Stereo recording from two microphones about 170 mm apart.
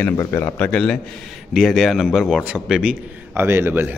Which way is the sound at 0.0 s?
15° left (ahead or behind).